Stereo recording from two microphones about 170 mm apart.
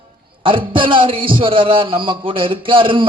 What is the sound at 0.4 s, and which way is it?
A man's voice, 30° right (ahead or behind).